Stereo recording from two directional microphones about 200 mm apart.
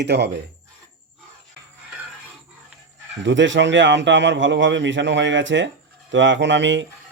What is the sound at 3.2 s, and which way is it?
A man's voice, 65° right (ahead or behind).